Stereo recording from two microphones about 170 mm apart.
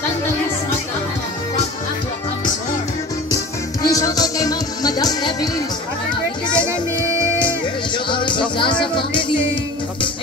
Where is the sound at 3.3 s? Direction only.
20° left (ahead or behind).